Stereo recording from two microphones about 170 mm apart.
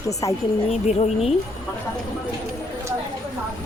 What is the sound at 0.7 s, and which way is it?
Speech, 40° left (ahead or behind).